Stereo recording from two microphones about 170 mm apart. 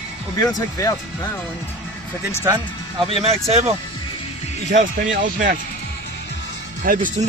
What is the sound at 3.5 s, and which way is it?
Speech, 35° right (ahead or behind).